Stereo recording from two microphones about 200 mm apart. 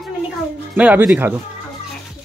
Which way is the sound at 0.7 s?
5° right (ahead or behind).